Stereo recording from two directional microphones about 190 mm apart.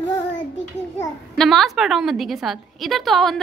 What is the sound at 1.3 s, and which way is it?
A woman's voice, centre (ahead or behind).